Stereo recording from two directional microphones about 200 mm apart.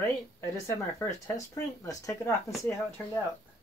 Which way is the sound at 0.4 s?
15° left (ahead or behind).